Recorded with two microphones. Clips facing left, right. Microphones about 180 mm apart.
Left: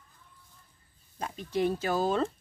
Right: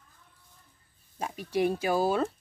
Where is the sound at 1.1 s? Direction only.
10° right (ahead or behind).